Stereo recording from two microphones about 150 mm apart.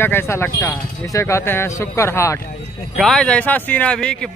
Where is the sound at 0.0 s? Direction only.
15° left (ahead or behind).